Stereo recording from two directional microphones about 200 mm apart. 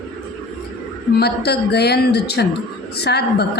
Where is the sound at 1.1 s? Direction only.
55° left (ahead or behind).